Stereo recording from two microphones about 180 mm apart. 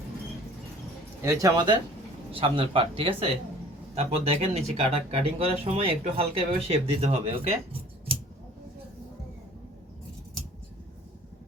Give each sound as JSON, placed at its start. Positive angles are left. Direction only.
{"t": 1.2, "sound": "speech", "side_deg": -15}